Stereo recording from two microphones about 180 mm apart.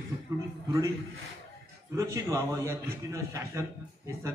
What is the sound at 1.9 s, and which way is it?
A man's voice, 15° right (ahead or behind).